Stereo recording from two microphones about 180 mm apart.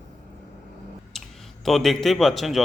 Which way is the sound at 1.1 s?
Centre (ahead or behind).